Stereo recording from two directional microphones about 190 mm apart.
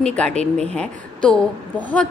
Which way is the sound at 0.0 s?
5° left (ahead or behind).